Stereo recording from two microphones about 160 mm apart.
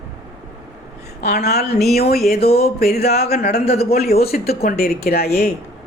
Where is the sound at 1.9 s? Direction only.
70° left (ahead or behind).